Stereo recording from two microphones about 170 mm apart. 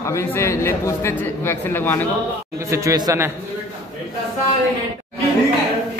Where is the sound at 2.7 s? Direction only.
20° right (ahead or behind).